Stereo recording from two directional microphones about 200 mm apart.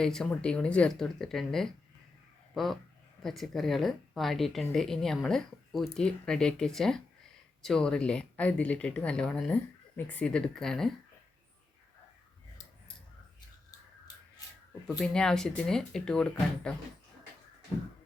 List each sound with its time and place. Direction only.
0.0 s speech: 5° left (ahead or behind)
14.1 s a sound: 20° left (ahead or behind)
14.8 s speech: 5° left (ahead or behind)